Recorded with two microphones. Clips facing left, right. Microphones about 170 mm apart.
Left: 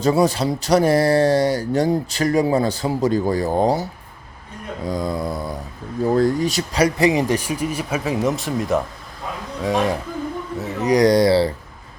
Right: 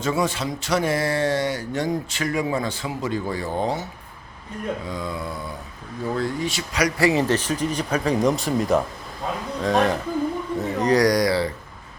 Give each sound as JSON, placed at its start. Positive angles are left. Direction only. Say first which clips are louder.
{"t": 0.0, "sound": "speech", "louder": "left 6 dB", "side_deg": 35}
{"t": 4.9, "sound": "speech", "louder": "left 6 dB", "side_deg": 40}
{"t": 7.0, "sound": "speech", "louder": "left 2 dB", "side_deg": 15}
{"t": 10.6, "sound": "a sound", "louder": "left 1 dB", "side_deg": 5}
{"t": 10.9, "sound": "speech", "louder": "left 6 dB", "side_deg": 25}